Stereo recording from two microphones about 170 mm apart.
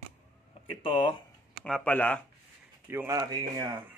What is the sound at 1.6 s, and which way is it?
Speech, 5° left (ahead or behind).